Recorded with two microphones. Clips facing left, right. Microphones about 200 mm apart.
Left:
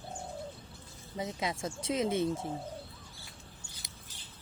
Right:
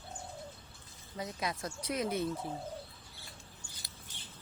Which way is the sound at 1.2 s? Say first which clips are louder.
Left 3 dB; 25° left (ahead or behind).